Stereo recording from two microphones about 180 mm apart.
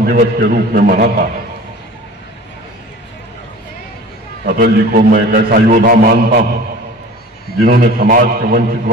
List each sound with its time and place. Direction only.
0.0 s a man's voice: 55° right (ahead or behind)
4.5 s a man's voice: 50° right (ahead or behind)
7.6 s a man's voice: 55° right (ahead or behind)